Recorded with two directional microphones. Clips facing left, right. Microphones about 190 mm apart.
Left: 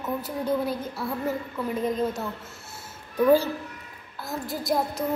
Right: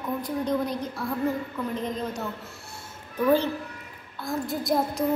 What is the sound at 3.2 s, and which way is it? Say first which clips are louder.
A woman's voice: left 2 dB; 10° left (ahead or behind).